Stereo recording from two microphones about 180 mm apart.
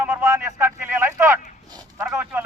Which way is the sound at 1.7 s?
20° right (ahead or behind).